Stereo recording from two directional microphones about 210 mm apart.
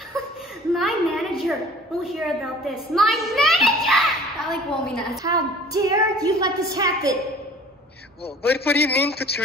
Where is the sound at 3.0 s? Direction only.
Centre (ahead or behind).